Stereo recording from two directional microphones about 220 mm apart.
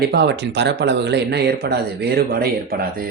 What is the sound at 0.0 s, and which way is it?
Speech, 50° right (ahead or behind).